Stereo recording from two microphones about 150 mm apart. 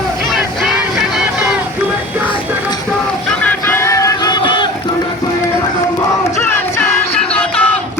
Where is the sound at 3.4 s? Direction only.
10° left (ahead or behind); by 4.7 s 30° left (ahead or behind).